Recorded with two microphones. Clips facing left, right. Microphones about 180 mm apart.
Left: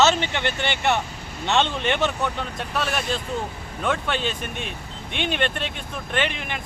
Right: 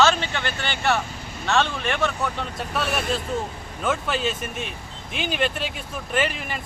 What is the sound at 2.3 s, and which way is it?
Speech, centre (ahead or behind).